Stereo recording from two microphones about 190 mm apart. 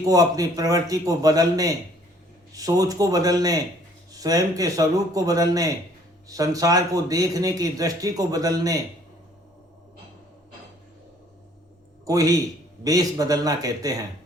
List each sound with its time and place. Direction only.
0.0 s speech: 20° right (ahead or behind)
12.0 s speech: 20° right (ahead or behind)